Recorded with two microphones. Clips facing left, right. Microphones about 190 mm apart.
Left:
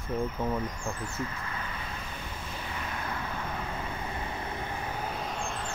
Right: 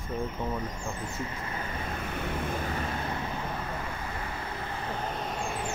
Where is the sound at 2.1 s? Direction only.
65° right (ahead or behind).